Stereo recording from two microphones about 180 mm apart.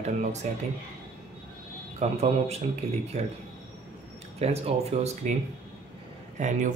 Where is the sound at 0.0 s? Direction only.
40° right (ahead or behind).